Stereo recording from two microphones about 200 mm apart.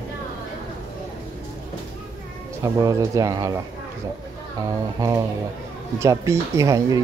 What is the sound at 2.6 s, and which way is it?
Speech, 15° right (ahead or behind).